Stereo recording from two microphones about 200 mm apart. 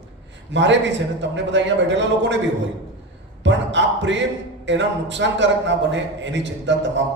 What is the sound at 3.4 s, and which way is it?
A man's voice, 65° right (ahead or behind).